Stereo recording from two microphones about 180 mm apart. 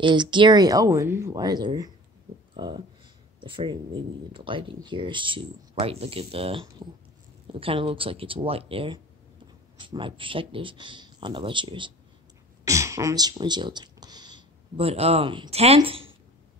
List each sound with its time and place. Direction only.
0.0 s speech: 25° right (ahead or behind)
12.6 s speech: 15° right (ahead or behind)